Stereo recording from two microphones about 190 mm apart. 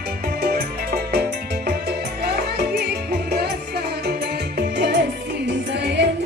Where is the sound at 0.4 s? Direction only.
55° right (ahead or behind).